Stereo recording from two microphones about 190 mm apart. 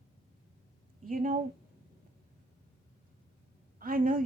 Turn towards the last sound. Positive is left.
turn(degrees=-45)  # may be behind; listen again after turning